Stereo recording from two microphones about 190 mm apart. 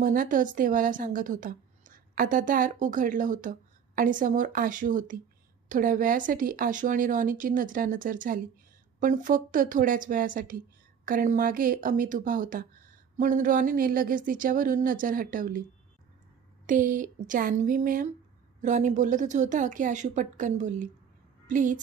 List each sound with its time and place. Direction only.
0.0 s a woman's voice: 45° right (ahead or behind)
16.6 s a woman's voice: 45° right (ahead or behind)